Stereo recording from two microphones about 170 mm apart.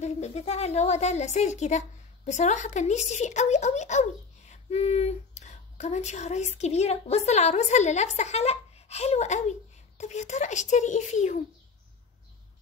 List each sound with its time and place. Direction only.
0.0 s a woman's voice: 40° left (ahead or behind)